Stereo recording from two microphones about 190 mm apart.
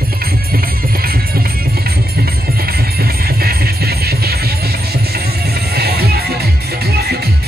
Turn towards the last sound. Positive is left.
turn(degrees=-55)  # may be behind; listen again after turning